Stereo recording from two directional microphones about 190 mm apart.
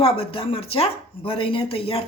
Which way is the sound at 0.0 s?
30° left (ahead or behind).